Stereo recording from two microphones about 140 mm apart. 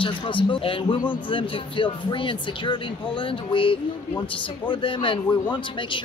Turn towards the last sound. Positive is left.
turn(degrees=40)  # may be behind; listen again after turning